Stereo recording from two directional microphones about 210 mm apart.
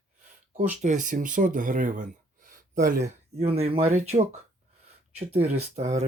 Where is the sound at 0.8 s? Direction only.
35° right (ahead or behind).